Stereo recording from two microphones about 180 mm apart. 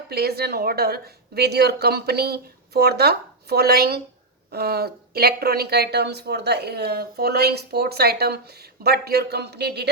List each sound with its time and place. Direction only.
0.1 s speech: 60° right (ahead or behind)